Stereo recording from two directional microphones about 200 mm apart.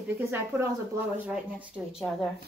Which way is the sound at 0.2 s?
15° right (ahead or behind).